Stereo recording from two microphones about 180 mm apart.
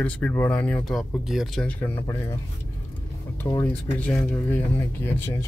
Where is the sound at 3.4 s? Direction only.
10° left (ahead or behind).